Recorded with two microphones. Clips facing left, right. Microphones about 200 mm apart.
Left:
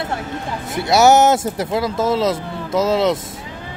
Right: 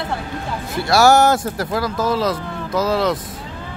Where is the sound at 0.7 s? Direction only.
20° left (ahead or behind).